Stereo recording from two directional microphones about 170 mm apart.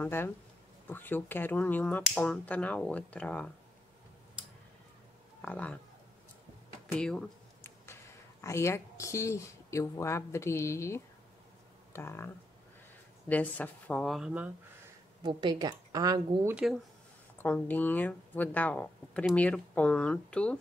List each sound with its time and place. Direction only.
0.0 s speech: 15° left (ahead or behind)
5.4 s speech: 5° left (ahead or behind)
6.9 s a sound: 5° left (ahead or behind)
7.8 s speech: 15° left (ahead or behind)
13.3 s speech: 10° left (ahead or behind)
15.2 s a woman's voice: 25° right (ahead or behind)
17.4 s speech: 10° left (ahead or behind)